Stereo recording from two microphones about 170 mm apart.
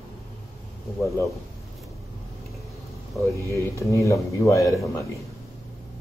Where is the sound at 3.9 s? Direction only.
20° left (ahead or behind).